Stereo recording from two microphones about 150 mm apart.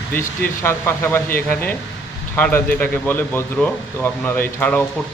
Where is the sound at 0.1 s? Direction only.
15° left (ahead or behind).